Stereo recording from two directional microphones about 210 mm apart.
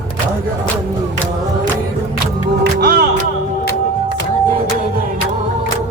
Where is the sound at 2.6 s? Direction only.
50° right (ahead or behind).